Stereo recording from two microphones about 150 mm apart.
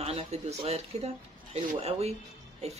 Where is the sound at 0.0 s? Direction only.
45° right (ahead or behind).